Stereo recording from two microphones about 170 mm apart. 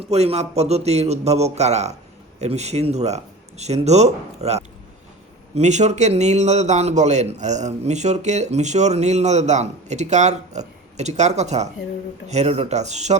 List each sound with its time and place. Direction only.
0.0 s a man's voice: 40° right (ahead or behind)